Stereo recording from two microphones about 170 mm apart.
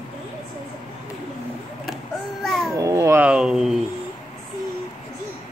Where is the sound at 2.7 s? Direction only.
20° right (ahead or behind).